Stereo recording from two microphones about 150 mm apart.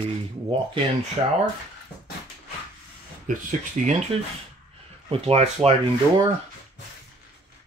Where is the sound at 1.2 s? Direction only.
35° right (ahead or behind).